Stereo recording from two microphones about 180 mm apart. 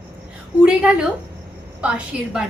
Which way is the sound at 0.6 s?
5° right (ahead or behind).